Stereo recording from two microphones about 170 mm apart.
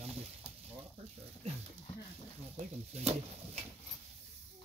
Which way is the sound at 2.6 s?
40° right (ahead or behind).